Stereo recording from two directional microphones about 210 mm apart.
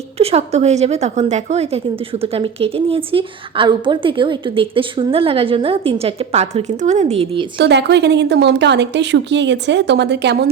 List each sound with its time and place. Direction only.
0.2 s a woman's voice: 30° right (ahead or behind)
7.6 s a woman's voice: 55° right (ahead or behind)